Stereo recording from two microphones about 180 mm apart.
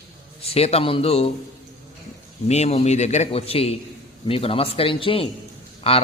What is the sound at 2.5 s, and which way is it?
A man's voice, 35° left (ahead or behind).